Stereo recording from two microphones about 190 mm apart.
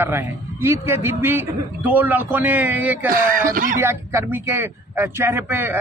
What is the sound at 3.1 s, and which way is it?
Speech, 45° right (ahead or behind).